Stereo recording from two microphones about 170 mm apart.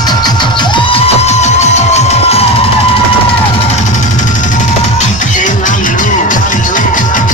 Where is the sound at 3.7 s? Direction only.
45° left (ahead or behind).